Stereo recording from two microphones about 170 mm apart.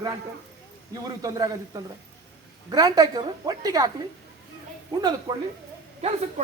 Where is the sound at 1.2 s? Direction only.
20° right (ahead or behind).